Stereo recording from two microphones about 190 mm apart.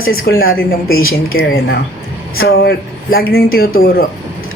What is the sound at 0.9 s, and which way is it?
Speech, 90° left.